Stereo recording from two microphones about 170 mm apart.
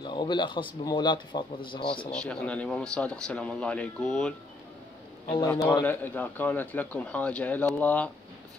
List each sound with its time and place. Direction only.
0.0 s speech: 25° left (ahead or behind)
2.1 s a man's voice: 5° left (ahead or behind)
5.5 s a man's voice: 10° left (ahead or behind)